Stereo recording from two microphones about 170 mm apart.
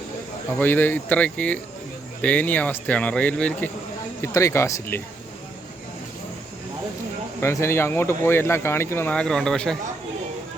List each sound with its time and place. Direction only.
0.6 s speech: 10° left (ahead or behind)
7.4 s speech: 15° left (ahead or behind)